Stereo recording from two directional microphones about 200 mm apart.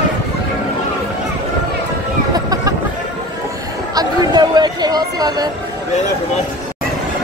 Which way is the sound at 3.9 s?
20° right (ahead or behind).